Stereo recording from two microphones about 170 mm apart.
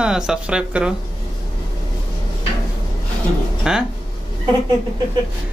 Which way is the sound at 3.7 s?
5° right (ahead or behind).